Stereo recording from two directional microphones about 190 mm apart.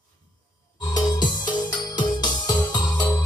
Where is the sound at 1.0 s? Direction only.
20° left (ahead or behind).